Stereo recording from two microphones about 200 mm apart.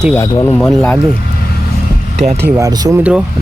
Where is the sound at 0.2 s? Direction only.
15° left (ahead or behind).